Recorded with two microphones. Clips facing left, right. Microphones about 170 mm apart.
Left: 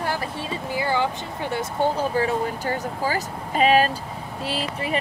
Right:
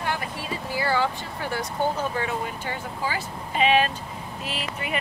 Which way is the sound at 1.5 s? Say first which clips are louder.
Left 3 dB; 30° left (ahead or behind).